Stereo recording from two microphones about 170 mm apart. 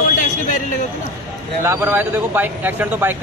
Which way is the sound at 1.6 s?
15° right (ahead or behind).